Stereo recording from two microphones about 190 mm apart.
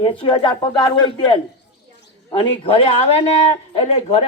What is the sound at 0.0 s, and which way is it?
A man's voice, 25° left (ahead or behind).